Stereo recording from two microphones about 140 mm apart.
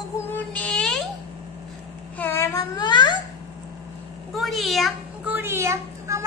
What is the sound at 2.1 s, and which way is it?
Babbling, 15° left (ahead or behind).